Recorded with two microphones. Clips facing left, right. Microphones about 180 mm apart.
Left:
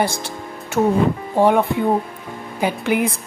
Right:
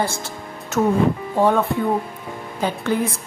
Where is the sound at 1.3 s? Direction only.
15° left (ahead or behind).